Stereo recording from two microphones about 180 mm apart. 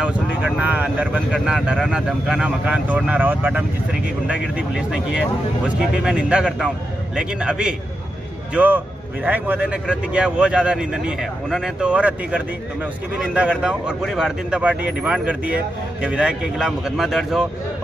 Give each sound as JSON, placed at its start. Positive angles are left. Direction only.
{"t": 0.0, "sound": "speech", "side_deg": -5}